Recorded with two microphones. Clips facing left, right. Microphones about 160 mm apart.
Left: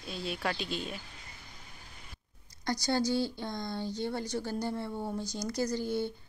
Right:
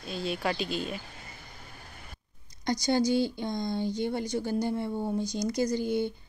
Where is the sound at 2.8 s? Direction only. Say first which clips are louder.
Right 4 dB; 15° right (ahead or behind).